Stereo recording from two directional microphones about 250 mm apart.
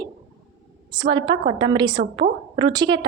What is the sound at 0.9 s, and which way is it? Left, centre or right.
A woman's voice, centre.